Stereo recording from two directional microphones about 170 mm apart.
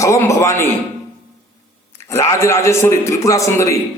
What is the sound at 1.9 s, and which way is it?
A man's voice, 15° left (ahead or behind).